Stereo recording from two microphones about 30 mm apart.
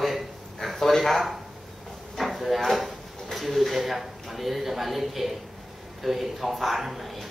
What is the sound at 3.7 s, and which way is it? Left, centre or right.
Music, centre.